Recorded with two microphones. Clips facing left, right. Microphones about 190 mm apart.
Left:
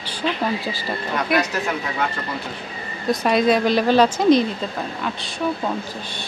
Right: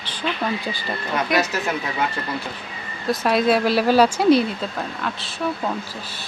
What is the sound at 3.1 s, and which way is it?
Speech, centre (ahead or behind).